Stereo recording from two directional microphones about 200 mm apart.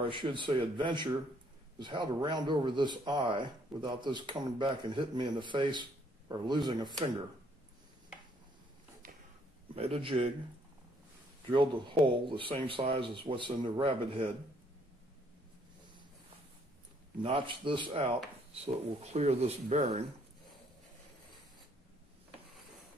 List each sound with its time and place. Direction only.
0.0 s speech: 25° right (ahead or behind)
9.8 s speech: 30° right (ahead or behind)
11.5 s speech: 25° right (ahead or behind)
17.2 s speech: 25° right (ahead or behind)